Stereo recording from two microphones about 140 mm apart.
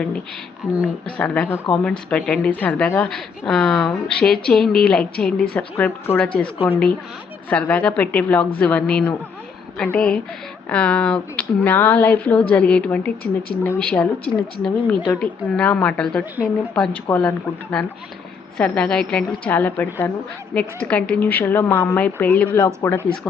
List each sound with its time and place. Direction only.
0.6 s speech: 10° right (ahead or behind)
1.2 s a woman's voice: 10° left (ahead or behind)
22.5 s speech: 20° left (ahead or behind)